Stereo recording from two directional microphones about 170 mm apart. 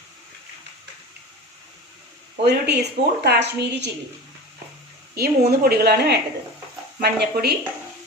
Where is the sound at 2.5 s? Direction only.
75° right (ahead or behind).